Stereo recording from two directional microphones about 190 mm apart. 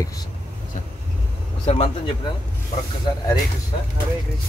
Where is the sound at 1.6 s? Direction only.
30° left (ahead or behind).